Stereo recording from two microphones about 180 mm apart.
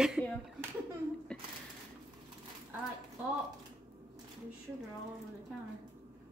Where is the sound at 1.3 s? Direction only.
5° left (ahead or behind).